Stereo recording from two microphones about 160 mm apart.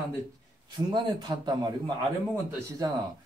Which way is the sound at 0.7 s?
25° right (ahead or behind).